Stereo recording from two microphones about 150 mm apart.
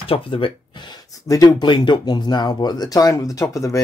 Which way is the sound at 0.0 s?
35° left (ahead or behind).